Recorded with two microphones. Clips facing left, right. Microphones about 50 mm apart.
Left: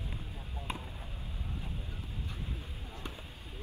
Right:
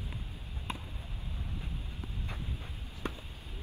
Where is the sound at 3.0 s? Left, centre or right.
Right.